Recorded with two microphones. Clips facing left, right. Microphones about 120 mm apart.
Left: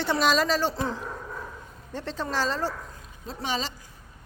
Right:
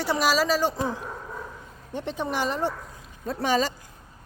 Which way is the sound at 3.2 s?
45° right (ahead or behind).